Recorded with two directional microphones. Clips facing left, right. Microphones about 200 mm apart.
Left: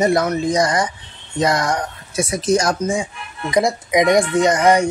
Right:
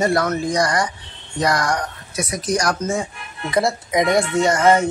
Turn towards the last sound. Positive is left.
turn(degrees=15)  # may be behind; listen again after turning